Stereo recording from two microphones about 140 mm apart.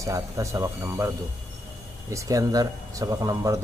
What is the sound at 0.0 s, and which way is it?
Speech, 20° right (ahead or behind).